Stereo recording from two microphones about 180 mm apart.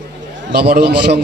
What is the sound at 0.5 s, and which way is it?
Speech, 65° right (ahead or behind).